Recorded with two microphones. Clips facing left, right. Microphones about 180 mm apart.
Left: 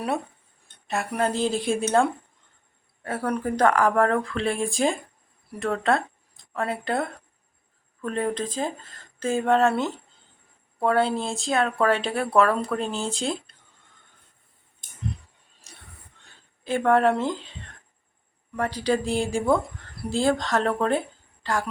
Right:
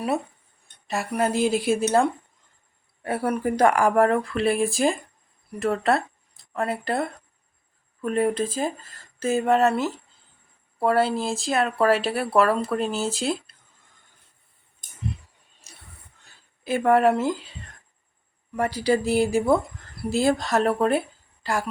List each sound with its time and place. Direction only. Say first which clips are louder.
0.9 s speech: right 1 dB; centre (ahead or behind)
3.0 s speech: right 2 dB; 15° right (ahead or behind)
16.2 s speech: right 2 dB; 10° right (ahead or behind)
18.5 s a woman's voice: right 2 dB; 10° right (ahead or behind)